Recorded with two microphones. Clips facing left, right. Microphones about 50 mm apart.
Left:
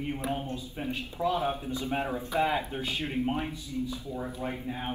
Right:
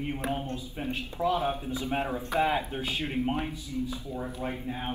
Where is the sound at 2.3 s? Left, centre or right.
Right.